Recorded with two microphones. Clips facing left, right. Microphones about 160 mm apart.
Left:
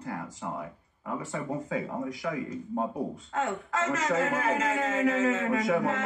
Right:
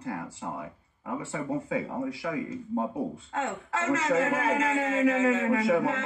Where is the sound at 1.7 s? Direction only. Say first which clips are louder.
Right 2 dB; 30° right (ahead or behind).